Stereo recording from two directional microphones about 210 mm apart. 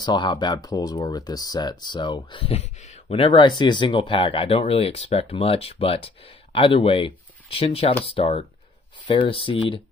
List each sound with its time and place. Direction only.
0.0 s speech: 20° left (ahead or behind)